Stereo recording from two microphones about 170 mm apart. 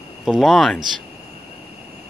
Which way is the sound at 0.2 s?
Centre (ahead or behind).